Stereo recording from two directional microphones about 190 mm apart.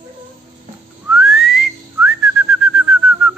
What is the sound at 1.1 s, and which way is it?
Whistling, centre (ahead or behind).